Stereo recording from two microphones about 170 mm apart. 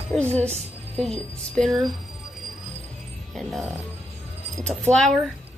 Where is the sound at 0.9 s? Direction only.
5° left (ahead or behind).